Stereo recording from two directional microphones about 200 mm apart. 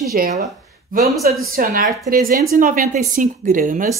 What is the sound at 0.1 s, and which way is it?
Speech, 45° right (ahead or behind).